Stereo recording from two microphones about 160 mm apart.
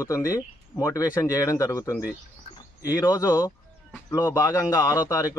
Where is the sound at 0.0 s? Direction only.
20° left (ahead or behind).